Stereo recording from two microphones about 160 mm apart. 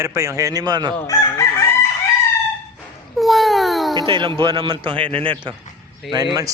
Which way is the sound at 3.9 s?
30° right (ahead or behind).